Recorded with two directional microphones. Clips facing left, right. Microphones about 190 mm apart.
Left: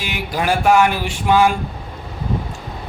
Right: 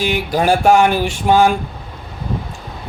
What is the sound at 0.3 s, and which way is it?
Speech, 40° right (ahead or behind).